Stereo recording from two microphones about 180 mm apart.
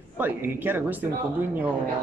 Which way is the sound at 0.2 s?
10° right (ahead or behind).